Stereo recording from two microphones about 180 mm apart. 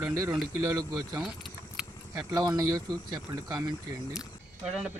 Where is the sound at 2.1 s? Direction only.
20° right (ahead or behind).